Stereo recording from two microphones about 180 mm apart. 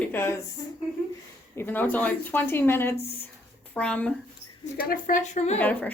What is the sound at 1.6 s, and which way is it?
Speech, 10° left (ahead or behind).